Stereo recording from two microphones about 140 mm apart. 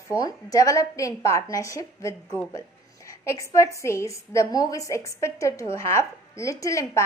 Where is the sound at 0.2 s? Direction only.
25° left (ahead or behind).